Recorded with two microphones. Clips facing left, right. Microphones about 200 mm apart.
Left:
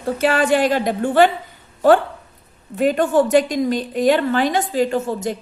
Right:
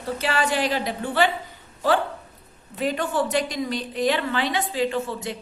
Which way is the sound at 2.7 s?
50° left (ahead or behind).